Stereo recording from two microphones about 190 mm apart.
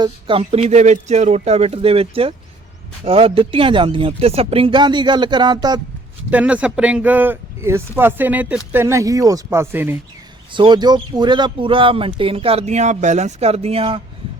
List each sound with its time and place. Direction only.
0.0 s speech: 25° right (ahead or behind)
6.3 s speech: 5° right (ahead or behind)
10.5 s speech: 25° right (ahead or behind)